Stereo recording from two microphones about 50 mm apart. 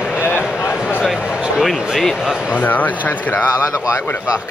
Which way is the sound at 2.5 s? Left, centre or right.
Left.